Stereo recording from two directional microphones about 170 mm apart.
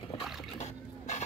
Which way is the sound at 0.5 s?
40° left (ahead or behind).